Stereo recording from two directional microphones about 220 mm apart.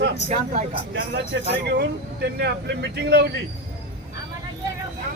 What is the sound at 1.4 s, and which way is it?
Speech, 50° right (ahead or behind).